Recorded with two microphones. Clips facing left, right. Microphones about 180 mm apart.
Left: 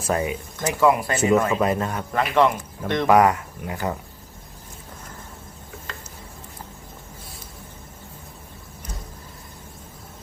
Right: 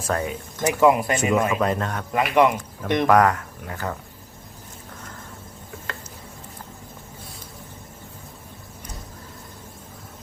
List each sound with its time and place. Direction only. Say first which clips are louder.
0.1 s speech: left 2 dB; 10° left (ahead or behind)
0.6 s speech: right 2 dB; 15° right (ahead or behind)
1.3 s speech: left 3 dB; 20° left (ahead or behind)
1.6 s a man's voice: left 1 dB; 5° left (ahead or behind)
2.1 s speech: right 1 dB; 15° right (ahead or behind)
3.1 s speech: left 2 dB; 10° left (ahead or behind)